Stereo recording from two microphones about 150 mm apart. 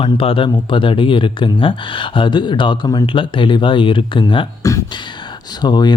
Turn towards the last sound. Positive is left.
turn(degrees=30)  # may be behind; listen again after turning